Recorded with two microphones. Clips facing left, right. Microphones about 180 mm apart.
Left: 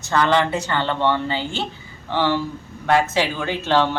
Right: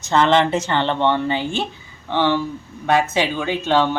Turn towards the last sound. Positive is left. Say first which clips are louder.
# right 1 dB
turn(degrees=-15)  # may be behind; listen again after turning